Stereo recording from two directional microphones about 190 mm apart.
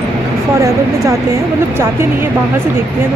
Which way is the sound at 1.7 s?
15° right (ahead or behind).